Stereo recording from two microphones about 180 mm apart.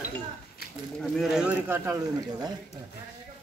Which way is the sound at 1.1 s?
5° right (ahead or behind).